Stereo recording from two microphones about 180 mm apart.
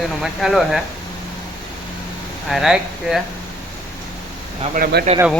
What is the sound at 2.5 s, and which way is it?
Speech, centre (ahead or behind).